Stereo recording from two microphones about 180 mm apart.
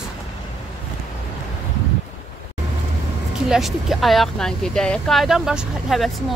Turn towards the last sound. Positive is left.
turn(degrees=0)  # may be behind; listen again after turning